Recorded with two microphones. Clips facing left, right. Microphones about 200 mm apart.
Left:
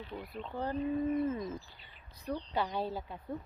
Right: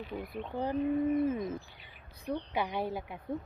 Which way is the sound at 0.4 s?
15° right (ahead or behind).